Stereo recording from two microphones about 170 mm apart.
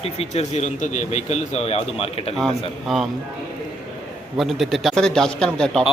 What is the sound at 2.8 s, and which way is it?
Speech, centre (ahead or behind).